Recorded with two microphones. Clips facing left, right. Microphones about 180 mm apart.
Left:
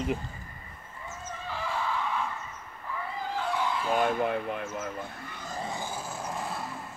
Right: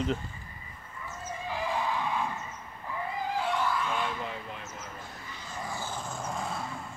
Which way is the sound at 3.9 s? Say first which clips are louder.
Left 8 dB; 50° left (ahead or behind).